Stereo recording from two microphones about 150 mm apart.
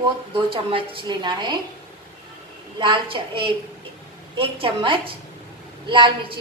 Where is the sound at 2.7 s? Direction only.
30° right (ahead or behind).